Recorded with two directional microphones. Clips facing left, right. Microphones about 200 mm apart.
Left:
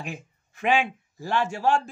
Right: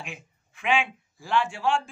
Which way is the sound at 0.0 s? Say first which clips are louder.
Left 5 dB; 40° left (ahead or behind).